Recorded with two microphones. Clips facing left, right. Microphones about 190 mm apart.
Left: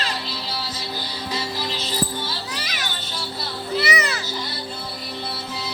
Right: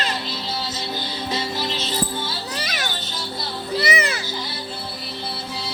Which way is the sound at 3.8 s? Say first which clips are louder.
Right 2 dB; 30° right (ahead or behind).